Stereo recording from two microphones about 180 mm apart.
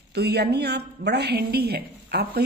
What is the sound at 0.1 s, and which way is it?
A woman's voice, 65° right (ahead or behind).